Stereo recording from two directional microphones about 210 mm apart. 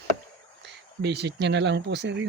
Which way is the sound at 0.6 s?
55° right (ahead or behind).